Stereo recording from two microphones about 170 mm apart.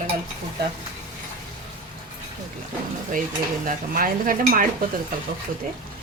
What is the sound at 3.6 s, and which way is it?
Dishes, 55° right (ahead or behind).